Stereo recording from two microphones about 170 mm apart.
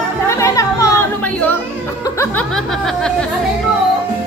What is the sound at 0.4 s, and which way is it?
Music, 20° left (ahead or behind).